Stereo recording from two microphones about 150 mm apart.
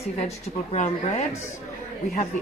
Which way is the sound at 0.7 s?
45° left (ahead or behind).